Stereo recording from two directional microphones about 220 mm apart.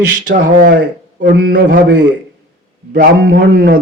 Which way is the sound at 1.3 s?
45° right (ahead or behind).